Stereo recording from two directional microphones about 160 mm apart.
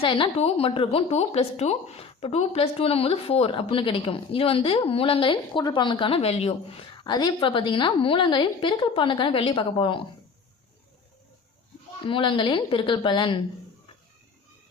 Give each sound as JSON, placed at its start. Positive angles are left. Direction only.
{"t": 0.0, "sound": "a woman's voice", "side_deg": 35}
{"t": 7.0, "sound": "a woman's voice", "side_deg": 25}
{"t": 12.0, "sound": "a woman's voice", "side_deg": 30}